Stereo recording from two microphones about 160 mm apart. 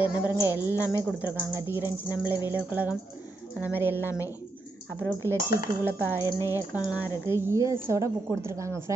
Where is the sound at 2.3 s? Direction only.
15° right (ahead or behind).